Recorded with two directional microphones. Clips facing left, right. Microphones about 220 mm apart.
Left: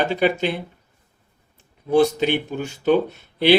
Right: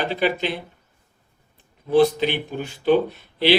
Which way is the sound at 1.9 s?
45° left (ahead or behind).